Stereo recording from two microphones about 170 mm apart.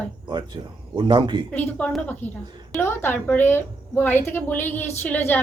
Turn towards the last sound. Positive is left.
turn(degrees=10)  # may be behind; listen again after turning